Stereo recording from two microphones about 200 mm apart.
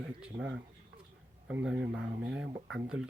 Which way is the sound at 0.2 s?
5° right (ahead or behind).